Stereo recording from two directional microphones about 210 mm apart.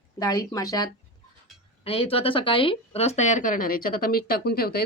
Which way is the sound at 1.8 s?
25° left (ahead or behind).